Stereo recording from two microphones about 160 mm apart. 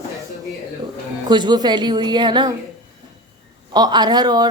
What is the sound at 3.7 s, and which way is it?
Speech, 25° right (ahead or behind).